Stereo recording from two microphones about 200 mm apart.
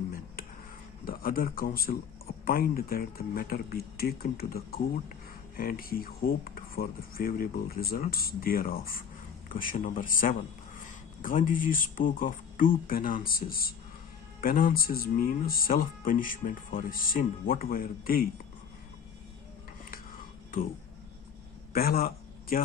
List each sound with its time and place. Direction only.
1.0 s a man's voice: 45° left (ahead or behind)
21.7 s a man's voice: 50° left (ahead or behind)